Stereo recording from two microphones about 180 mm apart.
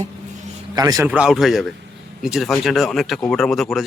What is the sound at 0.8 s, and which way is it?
Speech, 20° right (ahead or behind).